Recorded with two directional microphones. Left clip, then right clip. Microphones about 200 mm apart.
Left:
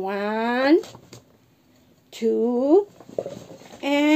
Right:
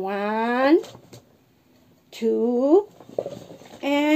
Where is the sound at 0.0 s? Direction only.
5° left (ahead or behind).